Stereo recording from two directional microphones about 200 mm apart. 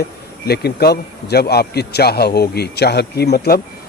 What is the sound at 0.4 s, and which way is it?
A man's voice, 55° left (ahead or behind).